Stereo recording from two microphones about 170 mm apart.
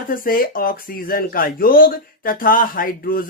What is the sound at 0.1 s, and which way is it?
Speech, 55° left (ahead or behind).